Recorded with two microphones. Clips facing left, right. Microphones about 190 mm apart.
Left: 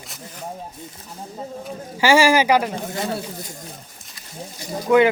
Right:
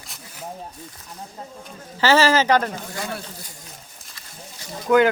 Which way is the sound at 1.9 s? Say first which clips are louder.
Left 2 dB; 10° left (ahead or behind).